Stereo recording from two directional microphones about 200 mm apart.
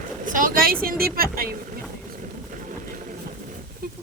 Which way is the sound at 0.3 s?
40° right (ahead or behind).